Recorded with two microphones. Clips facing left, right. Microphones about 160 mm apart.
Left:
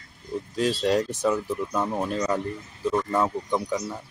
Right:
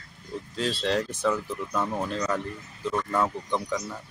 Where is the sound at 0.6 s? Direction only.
15° left (ahead or behind).